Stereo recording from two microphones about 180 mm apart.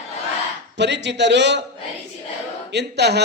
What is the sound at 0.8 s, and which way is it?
Speech, 75° right (ahead or behind).